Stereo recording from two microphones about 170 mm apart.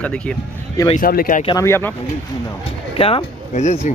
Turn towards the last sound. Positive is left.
turn(degrees=45)  # may be behind; listen again after turning